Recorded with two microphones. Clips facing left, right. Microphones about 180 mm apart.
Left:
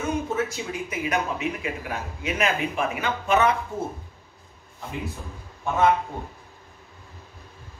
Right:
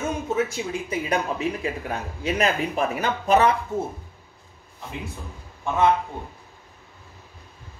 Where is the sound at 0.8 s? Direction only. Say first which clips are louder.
Right 1 dB; 30° right (ahead or behind).